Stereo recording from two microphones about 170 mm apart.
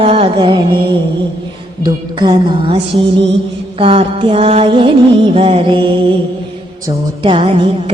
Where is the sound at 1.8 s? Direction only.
25° right (ahead or behind).